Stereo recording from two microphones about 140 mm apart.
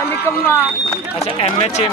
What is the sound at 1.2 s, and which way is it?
Speech, 45° left (ahead or behind).